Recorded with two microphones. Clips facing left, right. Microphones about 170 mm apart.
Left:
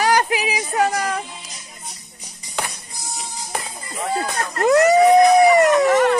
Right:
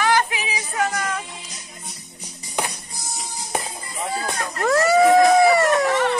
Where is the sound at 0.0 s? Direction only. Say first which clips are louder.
Left 2 dB; 40° left (ahead or behind).